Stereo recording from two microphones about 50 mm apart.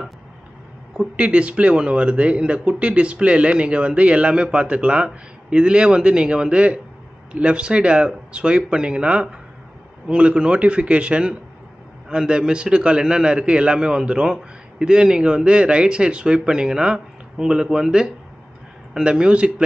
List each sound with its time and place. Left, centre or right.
1.1 s a man's voice: right